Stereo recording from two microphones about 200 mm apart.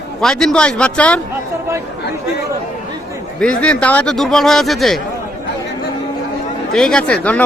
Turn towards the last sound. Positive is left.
turn(degrees=5)  # may be behind; listen again after turning